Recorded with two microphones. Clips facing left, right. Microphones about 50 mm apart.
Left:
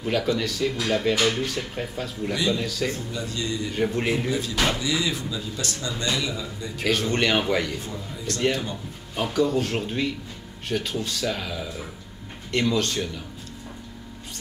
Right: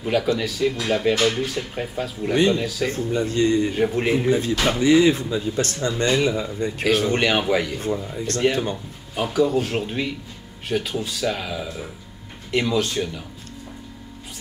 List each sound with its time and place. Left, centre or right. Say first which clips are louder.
0.0 s speech: right 3 dB; centre
2.9 s speech: right 7 dB; right
3.7 s speech: right 4 dB; centre
4.3 s speech: right 4 dB; right
6.9 s speech: right 3 dB; centre
7.8 s speech: right 8 dB; right
9.1 s speech: right 3 dB; centre